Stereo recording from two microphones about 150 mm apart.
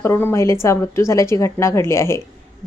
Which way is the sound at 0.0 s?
15° left (ahead or behind).